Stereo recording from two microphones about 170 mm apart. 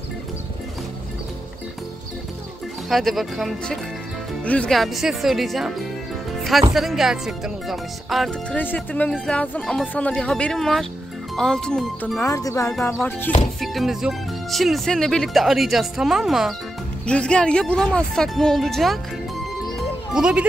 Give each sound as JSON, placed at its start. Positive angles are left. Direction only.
{"t": 2.9, "sound": "speech", "side_deg": 0}
{"t": 12.2, "sound": "speech", "side_deg": 20}
{"t": 13.6, "sound": "speech", "side_deg": 0}
{"t": 20.2, "sound": "speech", "side_deg": -5}